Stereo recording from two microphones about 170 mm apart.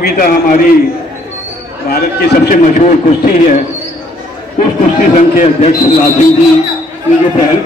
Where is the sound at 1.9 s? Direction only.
60° left (ahead or behind).